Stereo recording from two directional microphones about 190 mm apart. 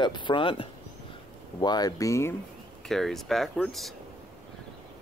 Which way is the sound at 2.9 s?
Centre (ahead or behind).